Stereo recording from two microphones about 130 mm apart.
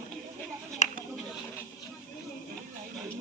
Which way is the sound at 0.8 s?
65° left (ahead or behind).